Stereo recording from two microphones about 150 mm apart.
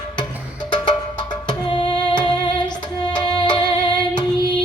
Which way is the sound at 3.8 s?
30° left (ahead or behind).